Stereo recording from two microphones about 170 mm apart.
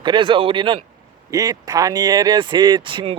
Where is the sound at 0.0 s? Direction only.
30° right (ahead or behind).